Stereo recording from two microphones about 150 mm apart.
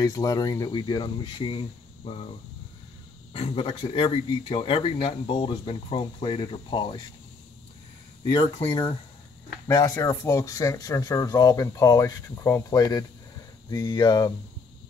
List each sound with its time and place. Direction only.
0.0 s speech: 25° left (ahead or behind); by 2.2 s 40° left (ahead or behind)
3.3 s speech: 40° left (ahead or behind)
9.7 s speech: 25° left (ahead or behind)